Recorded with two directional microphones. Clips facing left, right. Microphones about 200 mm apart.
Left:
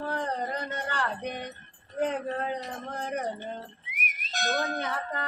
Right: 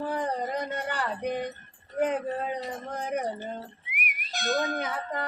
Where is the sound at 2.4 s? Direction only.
10° right (ahead or behind).